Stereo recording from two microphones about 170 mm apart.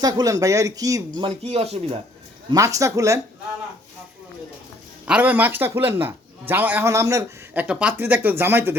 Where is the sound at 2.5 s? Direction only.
20° right (ahead or behind).